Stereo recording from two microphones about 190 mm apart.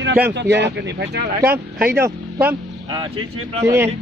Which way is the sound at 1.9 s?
10° right (ahead or behind).